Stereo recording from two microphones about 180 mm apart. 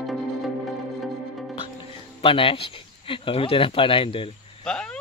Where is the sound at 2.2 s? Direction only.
30° left (ahead or behind).